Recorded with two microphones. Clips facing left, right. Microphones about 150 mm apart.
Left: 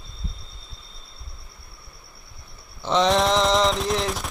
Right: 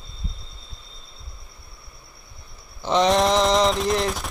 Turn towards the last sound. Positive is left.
turn(degrees=0)  # may be behind; listen again after turning